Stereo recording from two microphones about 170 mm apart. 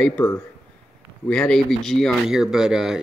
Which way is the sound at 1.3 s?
5° left (ahead or behind).